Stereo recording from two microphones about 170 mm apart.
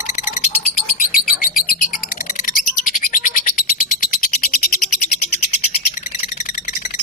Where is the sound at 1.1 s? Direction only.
55° left (ahead or behind).